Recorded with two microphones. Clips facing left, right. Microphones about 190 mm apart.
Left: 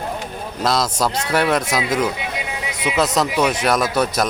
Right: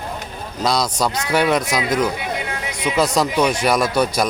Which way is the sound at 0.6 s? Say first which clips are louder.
Even; 5° left (ahead or behind).